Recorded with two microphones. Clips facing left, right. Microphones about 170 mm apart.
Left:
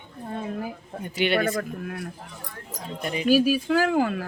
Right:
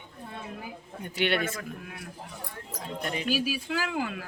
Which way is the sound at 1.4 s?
40° left (ahead or behind).